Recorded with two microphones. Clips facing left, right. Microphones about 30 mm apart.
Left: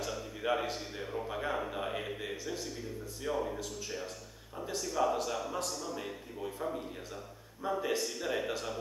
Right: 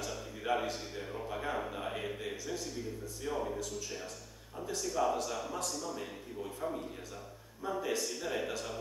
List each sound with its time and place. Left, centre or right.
0.0 s a man's voice: centre
4.7 s a man's voice: centre
7.6 s a man's voice: centre